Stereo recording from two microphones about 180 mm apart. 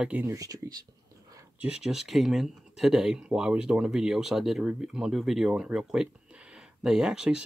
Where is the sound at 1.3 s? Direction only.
20° right (ahead or behind).